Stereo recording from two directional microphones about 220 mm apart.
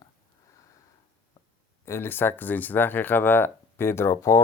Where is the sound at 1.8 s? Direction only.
10° left (ahead or behind).